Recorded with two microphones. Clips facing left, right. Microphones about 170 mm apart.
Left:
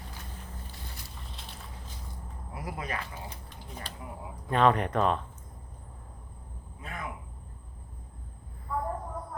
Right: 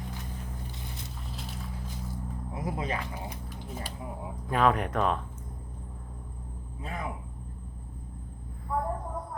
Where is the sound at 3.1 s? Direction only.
10° right (ahead or behind).